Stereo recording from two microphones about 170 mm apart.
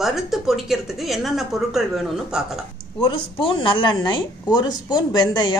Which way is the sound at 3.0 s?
30° left (ahead or behind).